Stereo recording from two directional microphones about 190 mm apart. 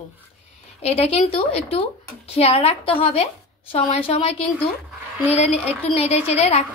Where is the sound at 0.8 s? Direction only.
30° left (ahead or behind).